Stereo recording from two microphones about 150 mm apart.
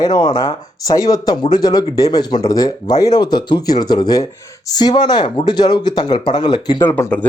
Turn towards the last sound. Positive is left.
turn(degrees=10)  # may be behind; listen again after turning